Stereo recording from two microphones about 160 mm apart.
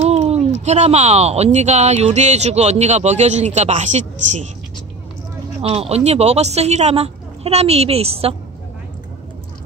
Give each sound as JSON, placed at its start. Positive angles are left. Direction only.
{"t": 0.0, "sound": "speech", "side_deg": -40}
{"t": 5.6, "sound": "speech", "side_deg": -40}